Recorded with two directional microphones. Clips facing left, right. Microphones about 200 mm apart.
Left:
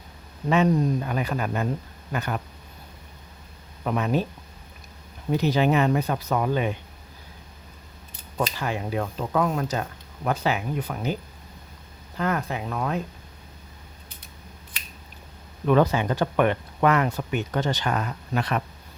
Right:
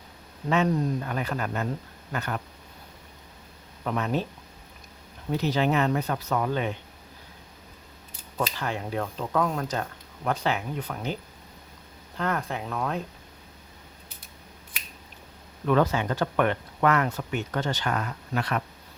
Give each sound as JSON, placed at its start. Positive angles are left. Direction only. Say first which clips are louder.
{"t": 0.5, "sound": "speech", "louder": "left 3 dB", "side_deg": 15}
{"t": 3.8, "sound": "speech", "louder": "left 3 dB", "side_deg": 10}
{"t": 5.3, "sound": "speech", "louder": "left 3 dB", "side_deg": 15}
{"t": 8.4, "sound": "speech", "louder": "left 2 dB", "side_deg": 10}
{"t": 15.6, "sound": "speech", "louder": "left 3 dB", "side_deg": 15}